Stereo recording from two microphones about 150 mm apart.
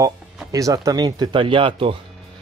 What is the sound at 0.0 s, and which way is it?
Speech, 20° right (ahead or behind).